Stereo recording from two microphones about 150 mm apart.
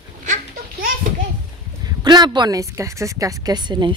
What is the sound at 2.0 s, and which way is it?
A woman's voice, 30° right (ahead or behind).